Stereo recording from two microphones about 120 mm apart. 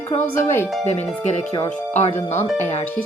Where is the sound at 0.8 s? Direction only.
65° left (ahead or behind).